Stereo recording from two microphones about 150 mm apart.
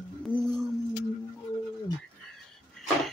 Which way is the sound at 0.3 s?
35° left (ahead or behind).